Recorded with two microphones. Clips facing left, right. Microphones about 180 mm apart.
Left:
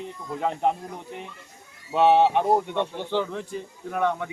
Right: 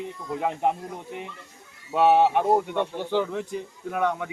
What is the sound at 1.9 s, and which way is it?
Speech, 5° right (ahead or behind).